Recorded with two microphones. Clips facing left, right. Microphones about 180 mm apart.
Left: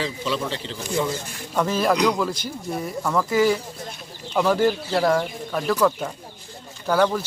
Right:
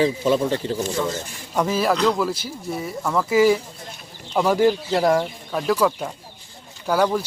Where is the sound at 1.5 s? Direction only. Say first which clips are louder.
Even; 10° right (ahead or behind).